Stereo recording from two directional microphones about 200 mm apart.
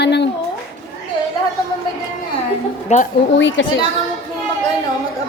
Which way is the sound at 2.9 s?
35° left (ahead or behind).